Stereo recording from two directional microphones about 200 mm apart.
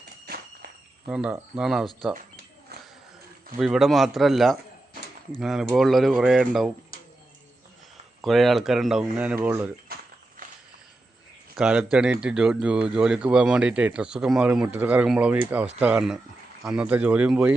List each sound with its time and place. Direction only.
1.0 s speech: 5° right (ahead or behind)
2.1 s a sound: 50° right (ahead or behind)
3.6 s speech: centre (ahead or behind)
8.2 s speech: centre (ahead or behind)
11.5 s speech: 5° right (ahead or behind)